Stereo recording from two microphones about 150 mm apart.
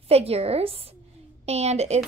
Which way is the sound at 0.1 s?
40° right (ahead or behind).